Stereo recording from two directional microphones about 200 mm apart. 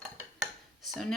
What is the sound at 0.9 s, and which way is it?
Speech, centre (ahead or behind).